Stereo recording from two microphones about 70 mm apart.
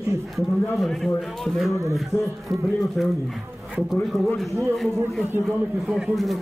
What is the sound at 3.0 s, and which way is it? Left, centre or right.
Speech, centre.